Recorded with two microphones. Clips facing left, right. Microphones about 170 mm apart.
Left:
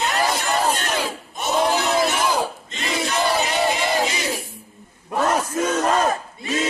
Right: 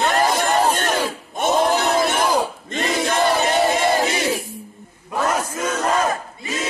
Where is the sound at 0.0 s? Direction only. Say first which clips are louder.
Right 4 dB; 50° right (ahead or behind).